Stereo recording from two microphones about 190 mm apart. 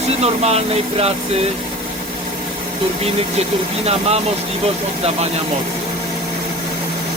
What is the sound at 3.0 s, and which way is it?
Speech, 35° right (ahead or behind).